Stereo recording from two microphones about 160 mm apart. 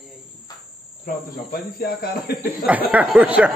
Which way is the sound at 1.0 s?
65° left (ahead or behind).